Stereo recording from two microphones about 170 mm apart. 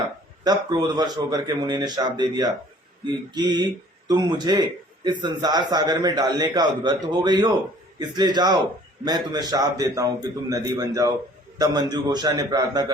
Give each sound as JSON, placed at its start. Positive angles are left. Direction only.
{"t": 0.4, "sound": "speech", "side_deg": -20}